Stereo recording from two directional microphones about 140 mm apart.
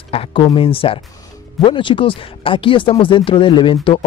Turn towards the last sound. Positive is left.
turn(degrees=40)  # may be behind; listen again after turning